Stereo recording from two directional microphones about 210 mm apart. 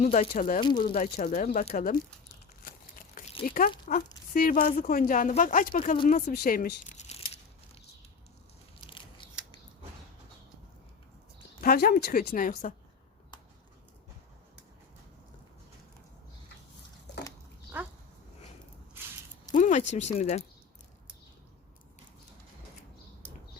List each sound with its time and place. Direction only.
0.0 s speech: 35° left (ahead or behind)
0.6 s speech: 20° left (ahead or behind)
0.9 s speech: 35° left (ahead or behind)
3.4 s speech: 40° left (ahead or behind)
8.9 s biting: 25° left (ahead or behind)
11.6 s speech: 45° left (ahead or behind)
17.7 s dog: 10° right (ahead or behind)
19.5 s a sound: 35° left (ahead or behind)
19.9 s speech: 35° left (ahead or behind)